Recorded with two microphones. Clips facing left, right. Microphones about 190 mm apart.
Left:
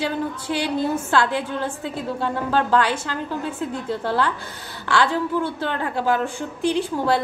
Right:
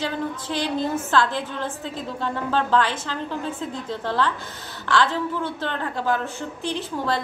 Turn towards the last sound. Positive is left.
turn(degrees=10)  # may be behind; listen again after turning